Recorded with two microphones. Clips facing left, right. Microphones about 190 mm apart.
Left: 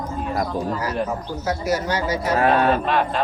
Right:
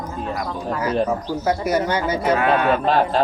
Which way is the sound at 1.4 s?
55° right (ahead or behind).